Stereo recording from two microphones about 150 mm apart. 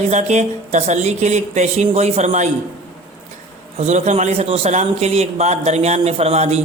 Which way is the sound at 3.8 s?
50° right (ahead or behind).